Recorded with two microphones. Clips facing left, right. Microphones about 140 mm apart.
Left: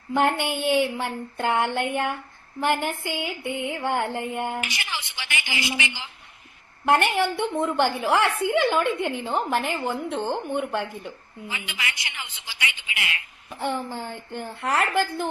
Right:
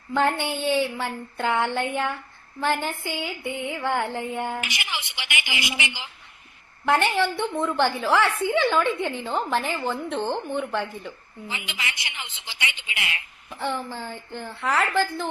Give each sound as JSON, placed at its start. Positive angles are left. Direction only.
{"t": 0.1, "sound": "a woman's voice", "side_deg": 15}
{"t": 4.7, "sound": "a woman's voice", "side_deg": -15}
{"t": 6.8, "sound": "a woman's voice", "side_deg": 15}
{"t": 11.4, "sound": "a woman's voice", "side_deg": -25}
{"t": 13.5, "sound": "a woman's voice", "side_deg": 15}